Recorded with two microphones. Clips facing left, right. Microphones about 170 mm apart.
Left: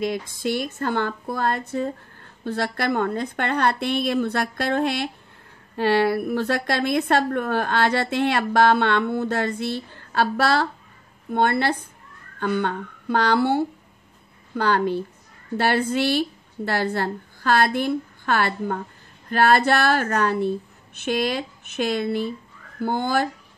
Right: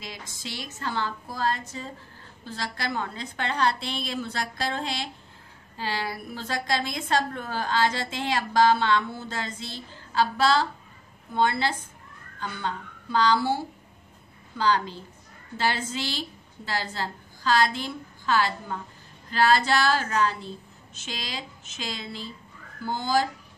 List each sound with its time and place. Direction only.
0.0 s a woman's voice: 55° left (ahead or behind)